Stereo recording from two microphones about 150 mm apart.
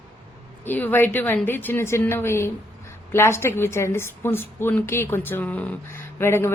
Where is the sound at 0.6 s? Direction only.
10° left (ahead or behind).